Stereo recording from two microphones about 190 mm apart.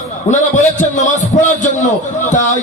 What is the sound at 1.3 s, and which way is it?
A man's voice, 40° left (ahead or behind).